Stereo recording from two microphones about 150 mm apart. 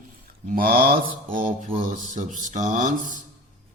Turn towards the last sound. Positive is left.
turn(degrees=-55)  # may be behind; listen again after turning